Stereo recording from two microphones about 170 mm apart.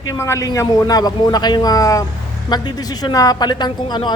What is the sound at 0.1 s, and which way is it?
A woman's voice, 15° left (ahead or behind).